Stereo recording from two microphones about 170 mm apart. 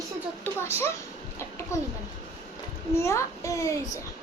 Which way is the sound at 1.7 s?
15° left (ahead or behind).